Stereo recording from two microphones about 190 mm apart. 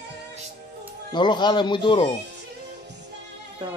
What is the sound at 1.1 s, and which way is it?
Speech, 25° left (ahead or behind).